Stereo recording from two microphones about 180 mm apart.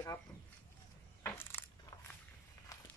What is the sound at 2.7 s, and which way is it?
Walk, 20° left (ahead or behind).